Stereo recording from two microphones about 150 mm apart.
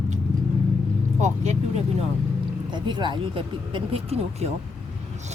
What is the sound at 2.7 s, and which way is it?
Speech, 30° right (ahead or behind).